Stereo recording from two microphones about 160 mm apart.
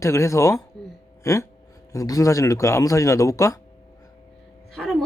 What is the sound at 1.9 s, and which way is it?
Speech, 20° left (ahead or behind).